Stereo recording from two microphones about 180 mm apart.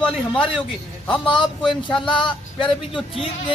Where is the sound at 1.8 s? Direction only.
25° left (ahead or behind).